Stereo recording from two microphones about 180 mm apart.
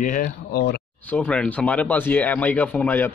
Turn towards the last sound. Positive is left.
turn(degrees=10)  # may be behind; listen again after turning